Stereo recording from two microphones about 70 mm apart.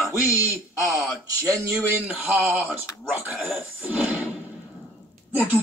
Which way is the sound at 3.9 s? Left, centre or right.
Centre.